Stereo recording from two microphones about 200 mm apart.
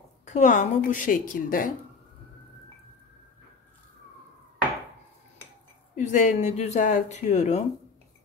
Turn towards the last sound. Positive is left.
turn(degrees=35)  # may be behind; listen again after turning